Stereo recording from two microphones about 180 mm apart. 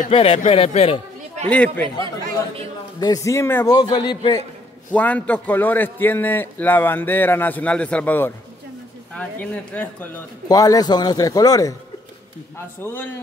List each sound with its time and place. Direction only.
0.1 s a man's voice: 35° left (ahead or behind)
1.5 s a man's voice: 5° left (ahead or behind)
3.0 s a man's voice: 20° left (ahead or behind)
4.9 s a man's voice: 10° left (ahead or behind)
10.5 s a man's voice: 20° left (ahead or behind)